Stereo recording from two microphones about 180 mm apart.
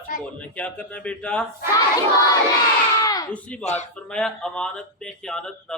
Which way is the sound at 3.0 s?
20° left (ahead or behind).